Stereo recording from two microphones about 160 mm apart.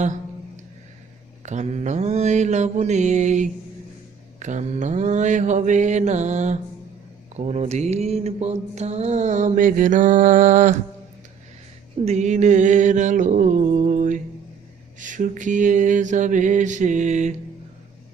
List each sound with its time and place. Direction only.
1.5 s mantra: 45° right (ahead or behind)
12.0 s mantra: 45° right (ahead or behind)